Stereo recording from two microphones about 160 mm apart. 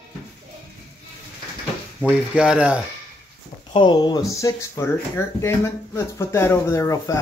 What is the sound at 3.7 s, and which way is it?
Speech, 30° left (ahead or behind).